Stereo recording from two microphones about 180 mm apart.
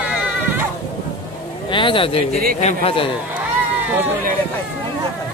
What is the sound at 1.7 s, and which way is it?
A man's voice, 30° left (ahead or behind).